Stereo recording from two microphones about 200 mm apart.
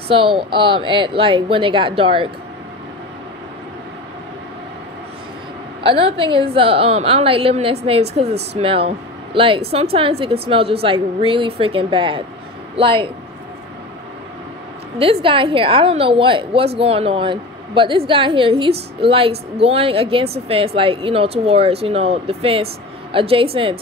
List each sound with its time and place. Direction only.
0.1 s a woman's voice: 25° right (ahead or behind)
5.9 s a woman's voice: 25° right (ahead or behind)
15.0 s a woman's voice: 25° right (ahead or behind)